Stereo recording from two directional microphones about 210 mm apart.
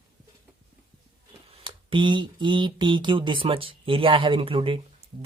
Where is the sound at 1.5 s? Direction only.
25° right (ahead or behind).